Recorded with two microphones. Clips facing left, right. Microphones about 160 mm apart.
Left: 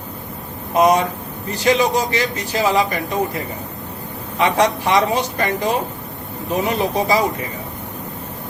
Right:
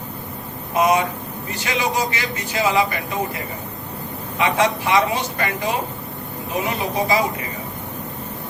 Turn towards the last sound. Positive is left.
turn(degrees=40)  # may be behind; listen again after turning